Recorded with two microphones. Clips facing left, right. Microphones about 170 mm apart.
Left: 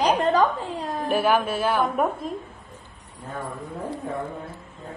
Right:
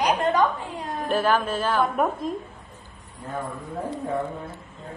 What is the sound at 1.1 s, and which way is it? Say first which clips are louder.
Speech: left 1 dB; 10° left (ahead or behind).